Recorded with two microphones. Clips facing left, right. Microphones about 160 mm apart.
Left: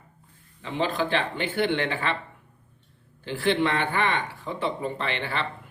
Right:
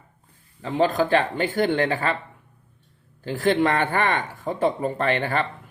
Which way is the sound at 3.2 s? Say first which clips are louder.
Right 3 dB; 40° right (ahead or behind).